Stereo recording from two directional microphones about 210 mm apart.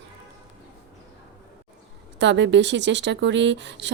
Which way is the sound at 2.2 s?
60° right (ahead or behind).